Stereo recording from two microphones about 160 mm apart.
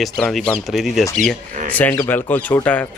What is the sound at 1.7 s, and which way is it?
Speech, 15° left (ahead or behind).